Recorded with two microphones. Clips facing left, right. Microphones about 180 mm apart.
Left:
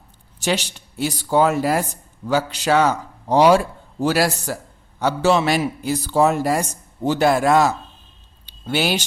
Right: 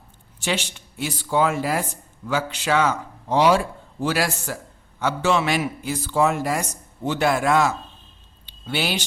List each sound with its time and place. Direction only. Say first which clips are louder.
0.3 s a man's voice: left 4 dB; 40° left (ahead or behind)